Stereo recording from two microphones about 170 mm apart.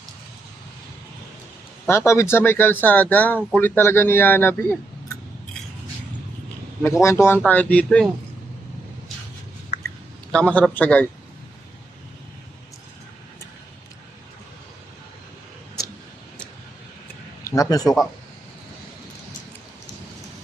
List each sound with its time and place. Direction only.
1.9 s speech: 15° left (ahead or behind)
6.8 s speech: 15° left (ahead or behind)
10.3 s speech: 5° left (ahead or behind)
17.4 s speech: 20° left (ahead or behind)